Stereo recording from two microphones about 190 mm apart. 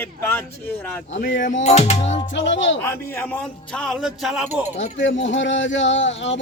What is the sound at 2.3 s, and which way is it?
Speech, 75° left (ahead or behind).